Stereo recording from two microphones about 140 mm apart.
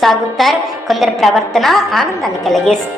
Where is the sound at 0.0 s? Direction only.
Centre (ahead or behind).